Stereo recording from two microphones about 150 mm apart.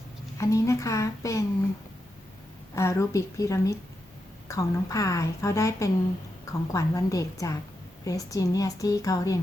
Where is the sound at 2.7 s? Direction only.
20° left (ahead or behind).